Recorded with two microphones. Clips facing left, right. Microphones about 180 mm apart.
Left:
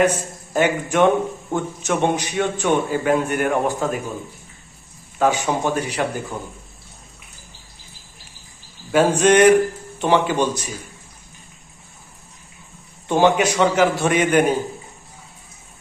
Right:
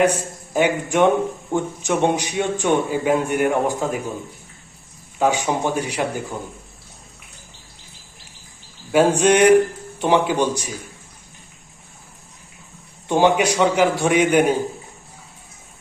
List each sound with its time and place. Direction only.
0.0 s a man's voice: 10° right (ahead or behind)
5.2 s a man's voice: 15° right (ahead or behind)
8.9 s a man's voice: 10° right (ahead or behind)
13.1 s a man's voice: 15° right (ahead or behind)